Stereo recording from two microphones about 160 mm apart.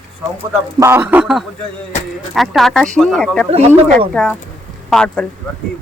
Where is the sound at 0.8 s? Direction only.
15° right (ahead or behind).